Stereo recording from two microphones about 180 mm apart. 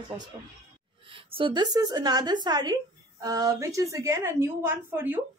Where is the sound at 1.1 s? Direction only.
30° right (ahead or behind).